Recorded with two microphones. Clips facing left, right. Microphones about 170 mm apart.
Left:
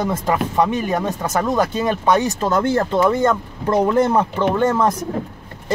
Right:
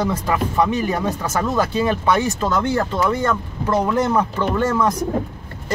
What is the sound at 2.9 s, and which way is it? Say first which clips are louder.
Speech: left 4 dB; 20° left (ahead or behind).